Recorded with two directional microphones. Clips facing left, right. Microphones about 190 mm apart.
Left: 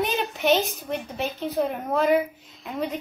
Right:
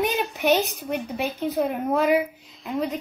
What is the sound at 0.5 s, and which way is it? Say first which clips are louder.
A woman's voice: right 1 dB; 15° right (ahead or behind).